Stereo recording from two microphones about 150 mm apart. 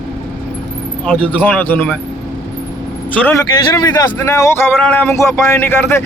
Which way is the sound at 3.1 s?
10° left (ahead or behind).